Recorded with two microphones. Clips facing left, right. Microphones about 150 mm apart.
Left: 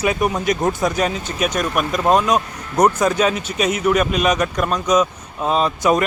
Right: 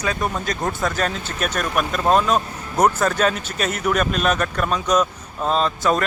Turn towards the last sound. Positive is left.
turn(degrees=15)  # may be behind; listen again after turning